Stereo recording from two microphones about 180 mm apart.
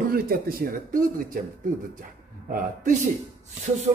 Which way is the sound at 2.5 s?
45° right (ahead or behind).